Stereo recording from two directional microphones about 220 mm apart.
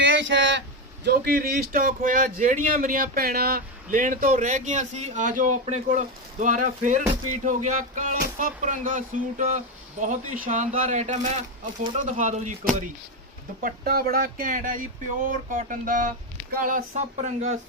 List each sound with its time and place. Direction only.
0.0 s a sound: 55° right (ahead or behind)
1.0 s speech: 45° right (ahead or behind)
13.6 s speech: 40° right (ahead or behind)